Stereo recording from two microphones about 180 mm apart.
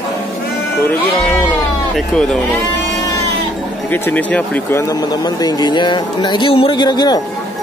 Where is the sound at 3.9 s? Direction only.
10° left (ahead or behind).